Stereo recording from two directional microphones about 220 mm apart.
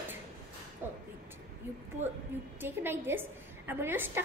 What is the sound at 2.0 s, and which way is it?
Speech, 35° right (ahead or behind).